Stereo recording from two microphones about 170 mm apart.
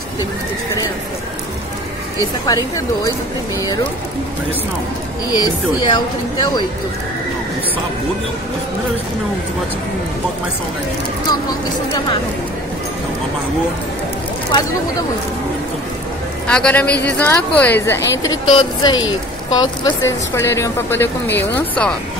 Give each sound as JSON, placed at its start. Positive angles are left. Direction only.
{"t": 2.4, "sound": "a woman's voice", "side_deg": 20}
{"t": 5.3, "sound": "a woman's voice", "side_deg": 25}
{"t": 16.4, "sound": "a woman's voice", "side_deg": 5}